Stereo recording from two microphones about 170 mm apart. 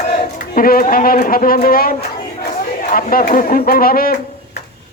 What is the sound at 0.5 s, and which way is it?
A woman's voice, 60° left (ahead or behind).